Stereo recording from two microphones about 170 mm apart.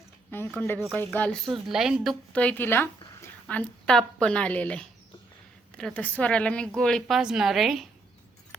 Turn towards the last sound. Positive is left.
turn(degrees=0)  # may be behind; listen again after turning